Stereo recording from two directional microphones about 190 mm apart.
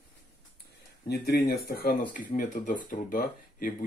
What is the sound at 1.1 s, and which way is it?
Speech, 55° left (ahead or behind).